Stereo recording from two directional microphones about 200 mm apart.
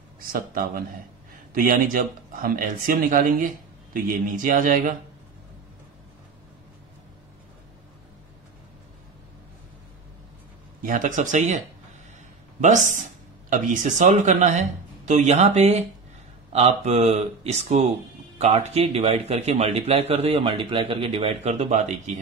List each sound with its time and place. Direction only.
0.3 s speech: 45° right (ahead or behind)
10.8 s speech: 40° right (ahead or behind)